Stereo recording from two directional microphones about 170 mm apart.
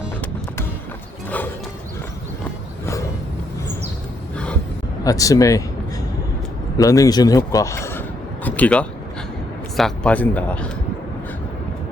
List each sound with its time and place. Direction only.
5.0 s a man's voice: 20° left (ahead or behind)
6.7 s a man's voice: 20° left (ahead or behind)